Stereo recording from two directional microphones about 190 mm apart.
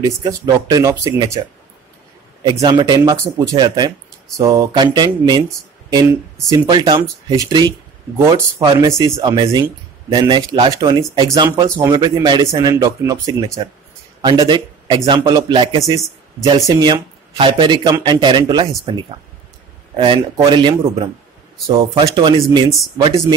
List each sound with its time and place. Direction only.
0.0 s speech: 20° right (ahead or behind)
2.4 s speech: 20° right (ahead or behind)
20.3 s speech: 25° right (ahead or behind)